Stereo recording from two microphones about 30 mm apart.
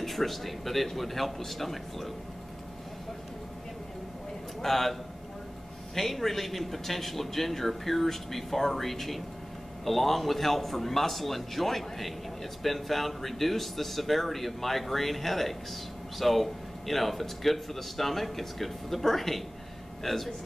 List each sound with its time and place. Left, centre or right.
0.0 s speech: centre
4.6 s a man's voice: centre
5.9 s a man's voice: centre